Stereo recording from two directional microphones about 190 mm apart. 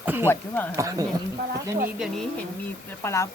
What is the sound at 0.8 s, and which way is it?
Speech, 15° right (ahead or behind).